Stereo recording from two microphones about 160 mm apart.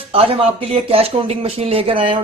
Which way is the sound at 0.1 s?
35° right (ahead or behind).